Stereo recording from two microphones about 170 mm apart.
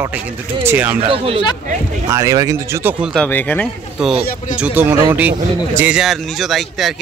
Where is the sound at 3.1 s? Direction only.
10° left (ahead or behind).